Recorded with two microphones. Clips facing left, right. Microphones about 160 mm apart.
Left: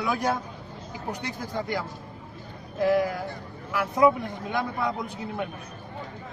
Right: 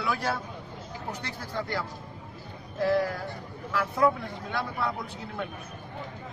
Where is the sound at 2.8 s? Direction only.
15° left (ahead or behind).